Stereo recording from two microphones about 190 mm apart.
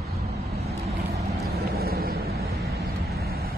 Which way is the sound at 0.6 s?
35° right (ahead or behind).